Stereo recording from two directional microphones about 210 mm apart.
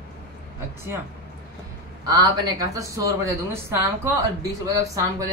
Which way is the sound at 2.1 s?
20° right (ahead or behind).